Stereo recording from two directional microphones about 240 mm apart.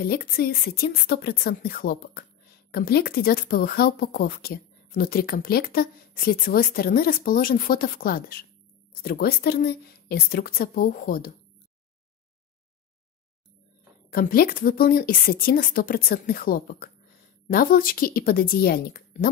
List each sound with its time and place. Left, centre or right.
0.0 s speech: left
14.1 s speech: left